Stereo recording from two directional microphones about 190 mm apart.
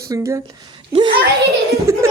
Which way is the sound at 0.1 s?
15° right (ahead or behind).